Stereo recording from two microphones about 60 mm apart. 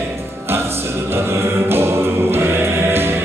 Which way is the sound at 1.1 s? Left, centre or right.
Right.